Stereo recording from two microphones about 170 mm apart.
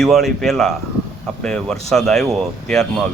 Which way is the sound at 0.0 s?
Centre (ahead or behind).